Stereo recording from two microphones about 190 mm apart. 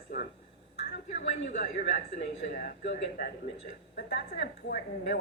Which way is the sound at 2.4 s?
60° left (ahead or behind).